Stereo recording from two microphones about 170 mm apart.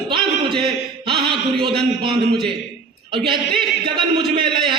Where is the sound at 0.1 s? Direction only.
30° right (ahead or behind).